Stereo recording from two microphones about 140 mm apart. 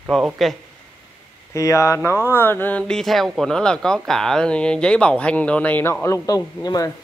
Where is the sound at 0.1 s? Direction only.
Centre (ahead or behind).